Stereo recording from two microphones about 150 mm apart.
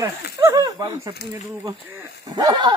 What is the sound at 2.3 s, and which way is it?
Speech, 25° right (ahead or behind).